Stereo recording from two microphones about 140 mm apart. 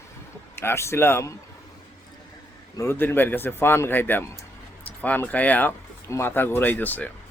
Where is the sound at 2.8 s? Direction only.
15° left (ahead or behind).